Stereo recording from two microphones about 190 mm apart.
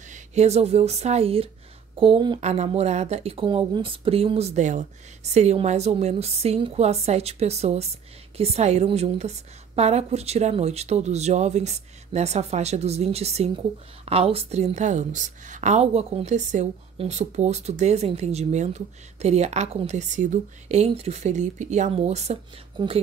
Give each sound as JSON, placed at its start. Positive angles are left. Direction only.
{"t": 0.1, "sound": "a woman's voice", "side_deg": -35}